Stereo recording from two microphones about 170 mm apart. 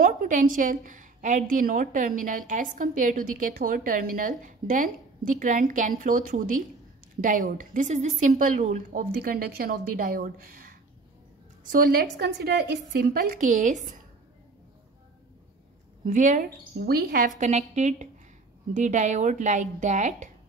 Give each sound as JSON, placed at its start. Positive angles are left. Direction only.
{"t": 0.0, "sound": "a woman's voice", "side_deg": -55}
{"t": 12.7, "sound": "a woman's voice", "side_deg": -50}
{"t": 16.1, "sound": "a woman's voice", "side_deg": -50}
{"t": 16.4, "sound": "a woman's voice", "side_deg": -70}
{"t": 17.4, "sound": "a woman's voice", "side_deg": -45}